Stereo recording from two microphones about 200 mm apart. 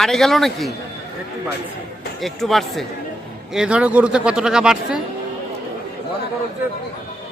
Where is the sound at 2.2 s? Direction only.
Centre (ahead or behind).